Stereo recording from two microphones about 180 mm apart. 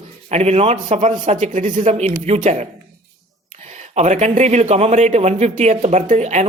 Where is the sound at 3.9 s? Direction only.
40° right (ahead or behind).